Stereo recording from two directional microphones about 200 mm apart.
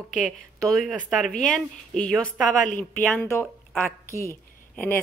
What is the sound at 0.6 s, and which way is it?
A woman's voice, centre (ahead or behind).